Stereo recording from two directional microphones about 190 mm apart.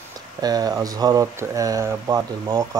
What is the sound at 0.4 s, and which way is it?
Speech, 20° right (ahead or behind).